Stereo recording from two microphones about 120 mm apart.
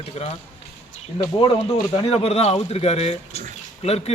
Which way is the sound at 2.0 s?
60° left (ahead or behind).